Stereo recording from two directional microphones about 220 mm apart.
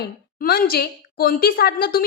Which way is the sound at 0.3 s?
40° left (ahead or behind).